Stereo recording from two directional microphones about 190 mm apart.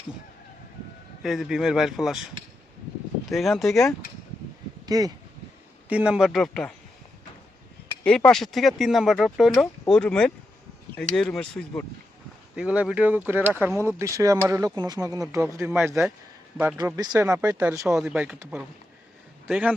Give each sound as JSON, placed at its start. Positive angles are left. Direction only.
{"t": 1.2, "sound": "speech", "side_deg": 0}
{"t": 3.2, "sound": "speech", "side_deg": 0}
{"t": 4.9, "sound": "speech", "side_deg": -20}
{"t": 5.9, "sound": "speech", "side_deg": -5}
{"t": 8.0, "sound": "speech", "side_deg": 5}
{"t": 12.5, "sound": "speech", "side_deg": -5}
{"t": 17.2, "sound": "speech", "side_deg": -5}